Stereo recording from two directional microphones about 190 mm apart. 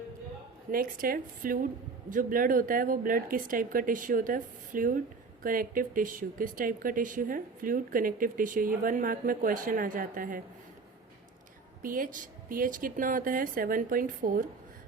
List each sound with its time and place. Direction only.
0.7 s speech: 50° right (ahead or behind)
11.8 s speech: 45° right (ahead or behind)